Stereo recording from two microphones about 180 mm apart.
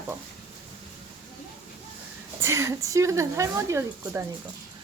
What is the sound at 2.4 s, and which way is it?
Speech, 15° right (ahead or behind).